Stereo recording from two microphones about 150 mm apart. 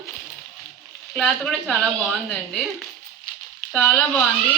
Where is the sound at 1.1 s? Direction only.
5° left (ahead or behind).